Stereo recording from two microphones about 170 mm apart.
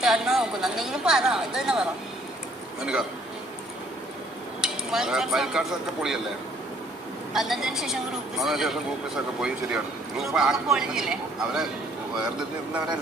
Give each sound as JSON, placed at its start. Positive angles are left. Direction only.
{"t": 0.0, "sound": "speech", "side_deg": 0}
{"t": 4.6, "sound": "speech", "side_deg": -5}
{"t": 7.3, "sound": "speech", "side_deg": 0}